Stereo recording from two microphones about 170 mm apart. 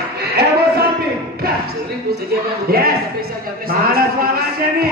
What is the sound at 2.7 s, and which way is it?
Speech, 65° right (ahead or behind).